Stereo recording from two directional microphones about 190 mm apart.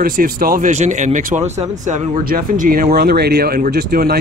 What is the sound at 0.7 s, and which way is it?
Speech, 35° right (ahead or behind).